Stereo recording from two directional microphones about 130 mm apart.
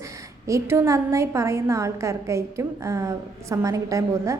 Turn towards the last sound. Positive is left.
turn(degrees=-25)  # may be behind; listen again after turning